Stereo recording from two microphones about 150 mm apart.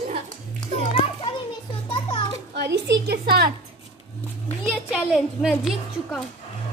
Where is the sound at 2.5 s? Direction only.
90° right.